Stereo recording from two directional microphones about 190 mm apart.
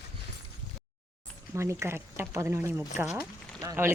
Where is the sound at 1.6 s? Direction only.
15° right (ahead or behind).